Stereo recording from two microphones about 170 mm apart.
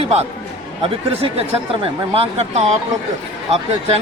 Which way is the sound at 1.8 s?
35° right (ahead or behind).